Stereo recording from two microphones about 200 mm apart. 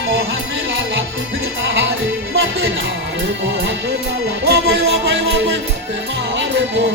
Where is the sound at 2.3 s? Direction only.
60° right (ahead or behind).